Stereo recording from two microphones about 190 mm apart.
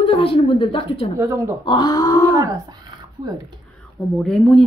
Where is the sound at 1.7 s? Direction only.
20° left (ahead or behind).